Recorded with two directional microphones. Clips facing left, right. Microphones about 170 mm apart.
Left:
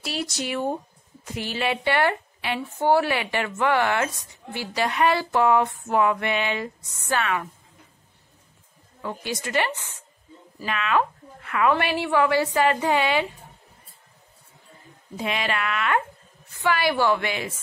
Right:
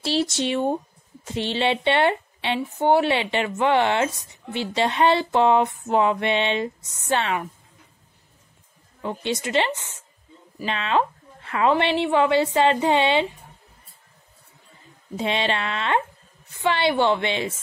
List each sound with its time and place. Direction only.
0.0 s a woman's voice: 30° right (ahead or behind)
9.0 s a woman's voice: 25° right (ahead or behind)
15.1 s a woman's voice: 25° right (ahead or behind)